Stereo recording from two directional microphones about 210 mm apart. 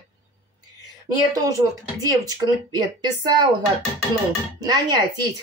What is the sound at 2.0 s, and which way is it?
Speech, 20° right (ahead or behind).